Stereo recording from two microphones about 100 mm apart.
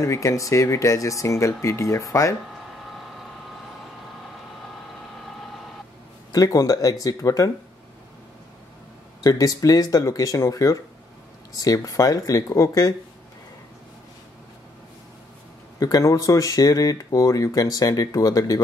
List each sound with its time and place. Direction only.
0.0 s speech: 30° left (ahead or behind)
6.3 s speech: 40° left (ahead or behind)
9.2 s speech: 40° left (ahead or behind)
15.8 s speech: 35° left (ahead or behind)